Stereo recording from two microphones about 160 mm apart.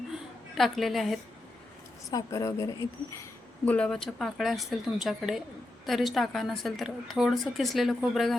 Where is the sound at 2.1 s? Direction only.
20° left (ahead or behind).